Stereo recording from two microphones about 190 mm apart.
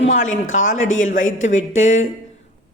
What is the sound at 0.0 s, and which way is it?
A man's voice, 40° left (ahead or behind).